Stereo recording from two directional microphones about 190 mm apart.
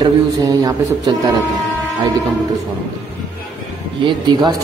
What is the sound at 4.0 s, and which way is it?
Speech, 25° right (ahead or behind).